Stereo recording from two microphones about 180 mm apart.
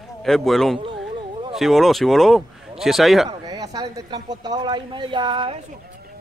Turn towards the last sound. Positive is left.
turn(degrees=-30)  # may be behind; listen again after turning